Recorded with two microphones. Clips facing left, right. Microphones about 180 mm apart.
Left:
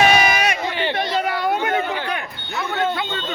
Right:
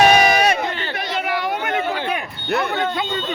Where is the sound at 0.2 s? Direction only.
35° right (ahead or behind).